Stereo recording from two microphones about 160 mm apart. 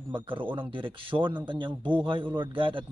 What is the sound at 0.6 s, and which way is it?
A man's voice, 30° right (ahead or behind).